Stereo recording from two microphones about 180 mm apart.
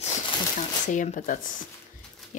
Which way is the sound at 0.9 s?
45° left (ahead or behind).